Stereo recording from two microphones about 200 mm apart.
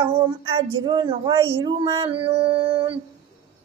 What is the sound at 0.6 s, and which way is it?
A woman's voice, 20° right (ahead or behind).